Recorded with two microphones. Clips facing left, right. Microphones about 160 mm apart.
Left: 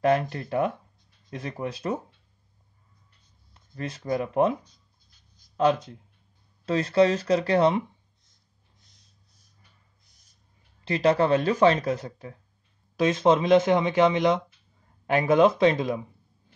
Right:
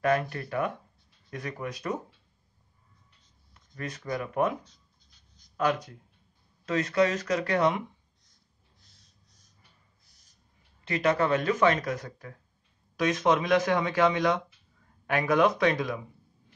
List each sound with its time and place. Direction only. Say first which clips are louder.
0.0 s speech: left 3 dB; 25° left (ahead or behind)
3.5 s speech: left 3 dB; 30° left (ahead or behind)
5.6 s speech: left 5 dB; 25° left (ahead or behind)
10.8 s speech: left 4 dB; 30° left (ahead or behind)